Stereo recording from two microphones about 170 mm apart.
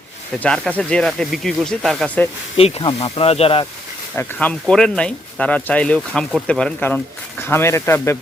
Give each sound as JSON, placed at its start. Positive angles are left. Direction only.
{"t": 0.3, "sound": "speech", "side_deg": 5}
{"t": 2.6, "sound": "speech", "side_deg": 35}
{"t": 4.1, "sound": "speech", "side_deg": 10}